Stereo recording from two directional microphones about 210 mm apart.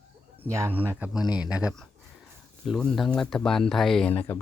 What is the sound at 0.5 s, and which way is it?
Speech, 10° right (ahead or behind).